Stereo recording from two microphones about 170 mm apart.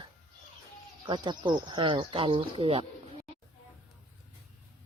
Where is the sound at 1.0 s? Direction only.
25° right (ahead or behind).